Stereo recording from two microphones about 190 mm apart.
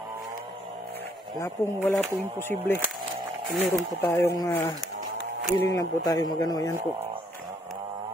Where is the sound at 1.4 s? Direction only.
10° left (ahead or behind).